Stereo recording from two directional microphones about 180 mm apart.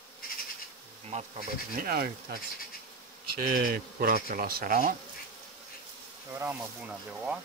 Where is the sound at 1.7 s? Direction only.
55° right (ahead or behind).